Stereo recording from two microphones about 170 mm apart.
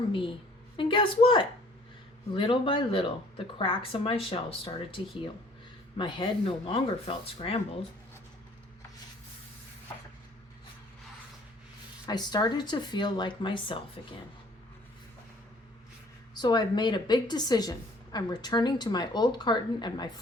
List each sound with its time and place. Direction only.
0.1 s a woman's voice: 30° left (ahead or behind)
12.0 s a woman's voice: 25° left (ahead or behind)
16.3 s a woman's voice: 25° left (ahead or behind)